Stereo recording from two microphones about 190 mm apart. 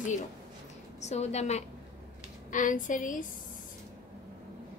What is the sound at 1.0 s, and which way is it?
A woman's voice, 35° left (ahead or behind).